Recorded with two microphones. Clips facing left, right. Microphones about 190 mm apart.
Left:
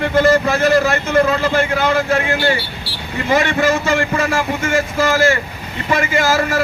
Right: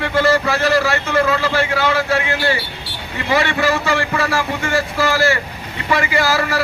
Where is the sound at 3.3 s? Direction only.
20° left (ahead or behind).